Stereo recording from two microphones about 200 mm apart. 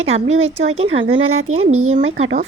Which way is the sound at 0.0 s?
30° right (ahead or behind).